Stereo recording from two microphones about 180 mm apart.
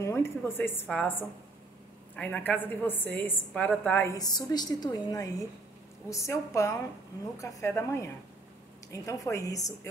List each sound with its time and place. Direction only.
0.0 s a woman's voice: 15° left (ahead or behind)
2.1 s a woman's voice: 10° left (ahead or behind)